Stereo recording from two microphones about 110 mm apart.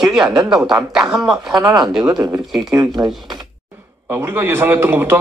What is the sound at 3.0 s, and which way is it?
A man's voice, 25° right (ahead or behind).